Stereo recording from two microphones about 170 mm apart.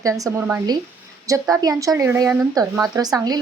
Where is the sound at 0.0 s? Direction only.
20° right (ahead or behind).